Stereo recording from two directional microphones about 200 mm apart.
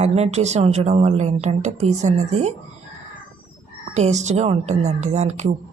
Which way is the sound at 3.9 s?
35° right (ahead or behind).